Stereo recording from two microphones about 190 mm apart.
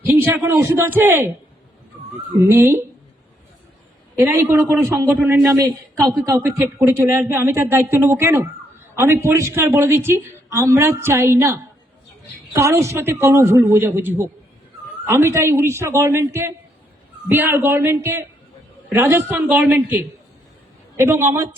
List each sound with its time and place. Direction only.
0.0 s a man's voice: 10° right (ahead or behind)
2.3 s a man's voice: 15° right (ahead or behind)
4.2 s a man's voice: 10° right (ahead or behind)